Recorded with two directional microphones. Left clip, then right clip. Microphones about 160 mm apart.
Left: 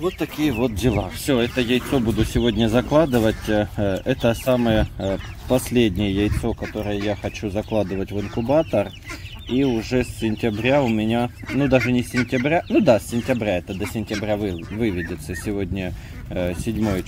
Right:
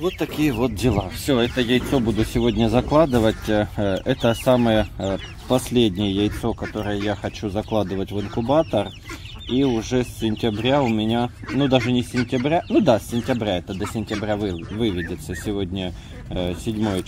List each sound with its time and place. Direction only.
0.0 s speech: centre (ahead or behind)
6.5 s speech: 20° right (ahead or behind)
7.1 s speech: 5° right (ahead or behind)
12.0 s speech: 40° left (ahead or behind)
12.4 s speech: 5° left (ahead or behind)